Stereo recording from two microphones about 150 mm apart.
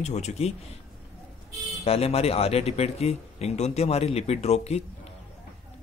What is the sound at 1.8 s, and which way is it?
Speech, 40° left (ahead or behind).